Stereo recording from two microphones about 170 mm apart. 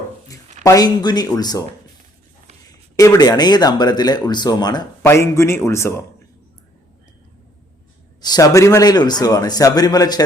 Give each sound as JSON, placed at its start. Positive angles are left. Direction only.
{"t": 0.6, "sound": "speech", "side_deg": 20}
{"t": 2.6, "sound": "a man's voice", "side_deg": 20}
{"t": 8.2, "sound": "speech", "side_deg": 20}